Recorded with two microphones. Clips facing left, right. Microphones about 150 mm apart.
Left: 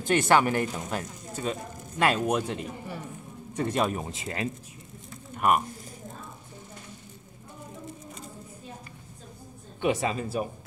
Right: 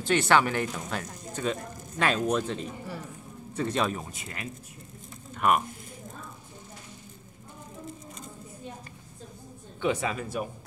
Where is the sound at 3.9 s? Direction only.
25° left (ahead or behind).